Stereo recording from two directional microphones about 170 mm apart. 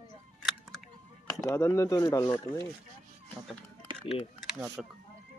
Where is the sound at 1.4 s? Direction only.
15° left (ahead or behind).